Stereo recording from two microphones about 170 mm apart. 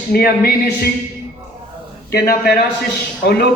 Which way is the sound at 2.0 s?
65° left (ahead or behind).